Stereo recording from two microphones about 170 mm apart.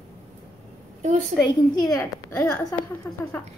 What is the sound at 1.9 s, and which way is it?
Speech, 20° left (ahead or behind).